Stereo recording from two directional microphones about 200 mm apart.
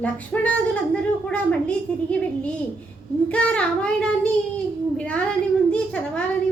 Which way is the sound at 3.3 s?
5° left (ahead or behind).